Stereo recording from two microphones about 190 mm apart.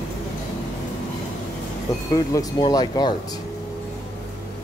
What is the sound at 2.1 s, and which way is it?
Speech, 20° left (ahead or behind).